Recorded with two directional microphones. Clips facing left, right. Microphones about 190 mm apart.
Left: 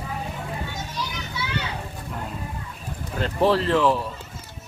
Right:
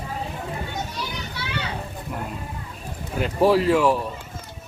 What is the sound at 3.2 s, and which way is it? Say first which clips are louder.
Speech: right 2 dB; 10° right (ahead or behind).